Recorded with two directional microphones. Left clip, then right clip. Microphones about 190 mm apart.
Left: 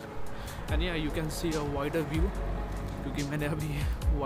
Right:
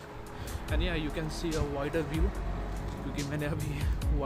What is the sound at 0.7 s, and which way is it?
Speech, centre (ahead or behind).